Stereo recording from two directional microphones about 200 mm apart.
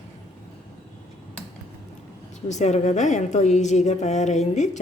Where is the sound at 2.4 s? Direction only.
35° left (ahead or behind).